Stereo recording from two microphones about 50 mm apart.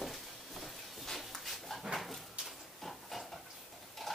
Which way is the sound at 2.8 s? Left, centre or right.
Centre.